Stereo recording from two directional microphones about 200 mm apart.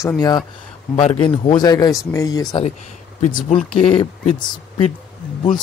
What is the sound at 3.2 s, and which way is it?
Speech, 35° left (ahead or behind).